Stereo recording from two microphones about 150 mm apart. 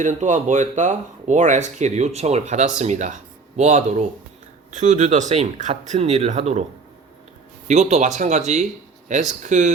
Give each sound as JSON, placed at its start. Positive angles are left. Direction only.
{"t": 0.0, "sound": "speech", "side_deg": -55}
{"t": 7.7, "sound": "speech", "side_deg": -50}